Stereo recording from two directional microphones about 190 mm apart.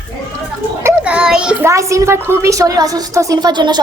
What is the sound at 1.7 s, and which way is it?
A woman's voice, 15° right (ahead or behind).